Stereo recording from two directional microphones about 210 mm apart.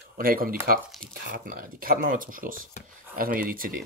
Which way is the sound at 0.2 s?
45° right (ahead or behind).